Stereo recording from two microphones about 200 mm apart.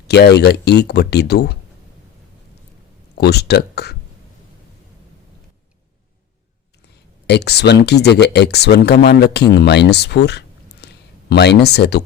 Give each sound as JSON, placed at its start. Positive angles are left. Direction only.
{"t": 0.1, "sound": "speech", "side_deg": 55}
{"t": 3.2, "sound": "speech", "side_deg": 55}
{"t": 7.3, "sound": "speech", "side_deg": 55}